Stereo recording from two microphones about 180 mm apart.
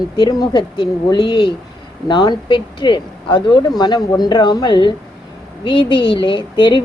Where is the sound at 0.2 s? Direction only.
20° left (ahead or behind).